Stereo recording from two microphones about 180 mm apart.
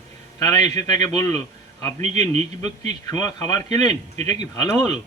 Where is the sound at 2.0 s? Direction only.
40° right (ahead or behind).